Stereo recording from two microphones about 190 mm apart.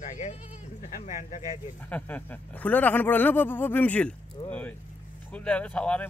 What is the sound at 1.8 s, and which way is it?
Speech, 10° left (ahead or behind).